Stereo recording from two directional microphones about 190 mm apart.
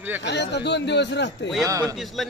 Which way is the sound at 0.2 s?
65° left (ahead or behind).